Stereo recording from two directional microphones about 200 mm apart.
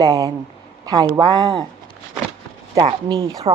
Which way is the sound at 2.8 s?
25° right (ahead or behind).